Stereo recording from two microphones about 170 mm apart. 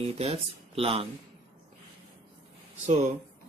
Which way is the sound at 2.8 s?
40° right (ahead or behind).